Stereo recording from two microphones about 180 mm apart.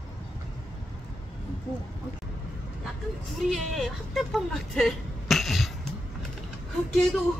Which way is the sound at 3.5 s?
Centre (ahead or behind).